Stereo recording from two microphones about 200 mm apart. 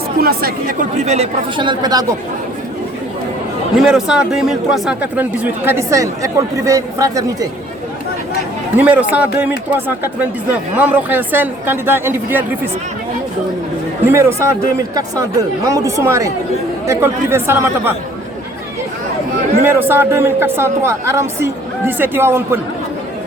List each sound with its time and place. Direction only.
0.2 s speech: 50° right (ahead or behind)
1.0 s speech: 30° right (ahead or behind)
3.8 s a man's voice: centre (ahead or behind)
8.7 s a man's voice: 10° right (ahead or behind)
10.8 s a man's voice: 10° right (ahead or behind)
14.0 s a man's voice: 10° right (ahead or behind)
19.6 s a man's voice: 10° right (ahead or behind)